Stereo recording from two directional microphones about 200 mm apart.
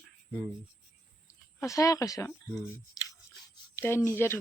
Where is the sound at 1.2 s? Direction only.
15° left (ahead or behind).